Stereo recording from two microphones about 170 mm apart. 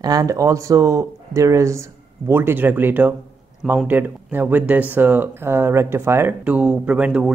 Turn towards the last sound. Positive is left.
turn(degrees=-5)  # may be behind; listen again after turning